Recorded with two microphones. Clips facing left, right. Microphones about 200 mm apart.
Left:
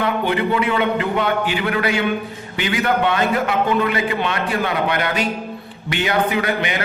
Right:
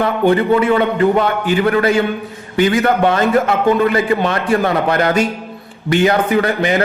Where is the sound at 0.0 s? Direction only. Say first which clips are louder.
Right 6 dB; 45° right (ahead or behind).